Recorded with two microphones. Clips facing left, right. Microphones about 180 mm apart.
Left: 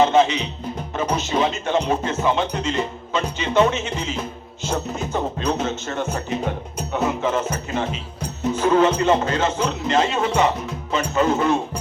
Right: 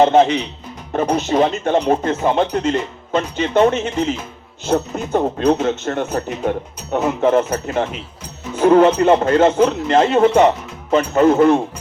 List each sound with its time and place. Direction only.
0.0 s speech: 55° right (ahead or behind)